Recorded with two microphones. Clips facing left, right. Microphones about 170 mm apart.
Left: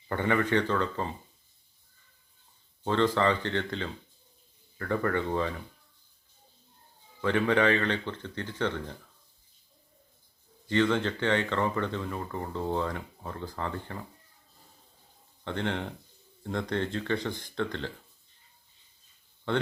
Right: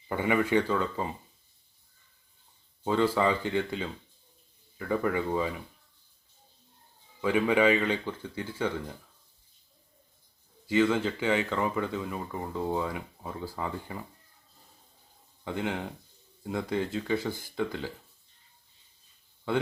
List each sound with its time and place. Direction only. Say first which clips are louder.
0.1 s speech: right 1 dB; 10° right (ahead or behind)
2.8 s speech: even; 10° right (ahead or behind)
7.2 s speech: right 1 dB; 10° right (ahead or behind)
10.7 s speech: right 1 dB; 5° right (ahead or behind)
15.4 s speech: even; 5° right (ahead or behind)
19.5 s speech: even; 5° right (ahead or behind)